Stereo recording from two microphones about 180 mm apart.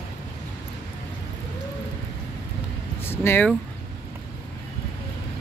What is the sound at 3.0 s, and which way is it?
Speech, 15° left (ahead or behind).